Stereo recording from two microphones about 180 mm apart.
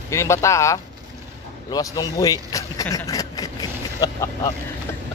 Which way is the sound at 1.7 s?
20° left (ahead or behind).